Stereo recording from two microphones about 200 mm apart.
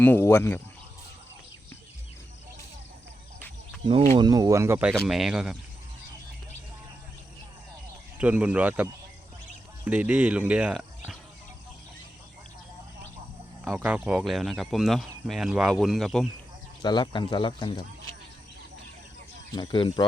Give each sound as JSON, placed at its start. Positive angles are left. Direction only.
{"t": 0.0, "sound": "speech", "side_deg": 10}
{"t": 4.1, "sound": "speech", "side_deg": -20}
{"t": 8.2, "sound": "speech", "side_deg": -5}
{"t": 13.7, "sound": "speech", "side_deg": -5}
{"t": 16.8, "sound": "speech", "side_deg": 20}
{"t": 19.5, "sound": "speech", "side_deg": 25}